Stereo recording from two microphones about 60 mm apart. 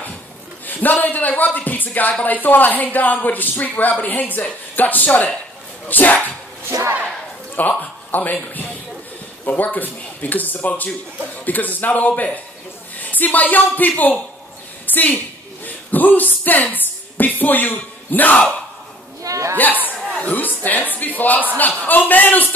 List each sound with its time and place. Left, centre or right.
0.7 s speech: left
6.7 s speech: right
7.5 s a man's voice: left
19.2 s hiccup: right
19.5 s speech: left